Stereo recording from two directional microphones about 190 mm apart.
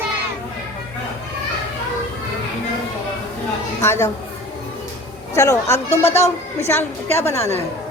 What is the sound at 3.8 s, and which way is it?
Speech, 15° left (ahead or behind).